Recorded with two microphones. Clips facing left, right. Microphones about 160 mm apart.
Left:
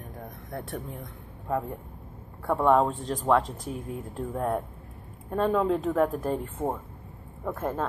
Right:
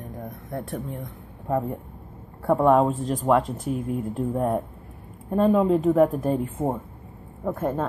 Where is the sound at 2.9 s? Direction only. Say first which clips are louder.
Right 3 dB; centre (ahead or behind).